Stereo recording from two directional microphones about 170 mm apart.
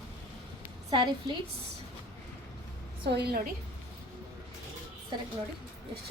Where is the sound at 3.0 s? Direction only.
75° right (ahead or behind).